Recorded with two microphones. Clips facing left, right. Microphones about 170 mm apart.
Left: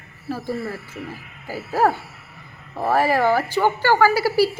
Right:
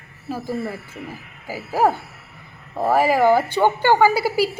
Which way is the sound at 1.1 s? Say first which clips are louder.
Even; 10° right (ahead or behind).